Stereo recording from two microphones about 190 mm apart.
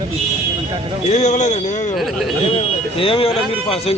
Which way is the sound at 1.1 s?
35° left (ahead or behind).